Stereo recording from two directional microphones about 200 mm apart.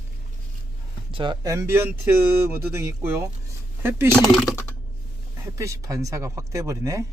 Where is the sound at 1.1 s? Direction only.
25° right (ahead or behind).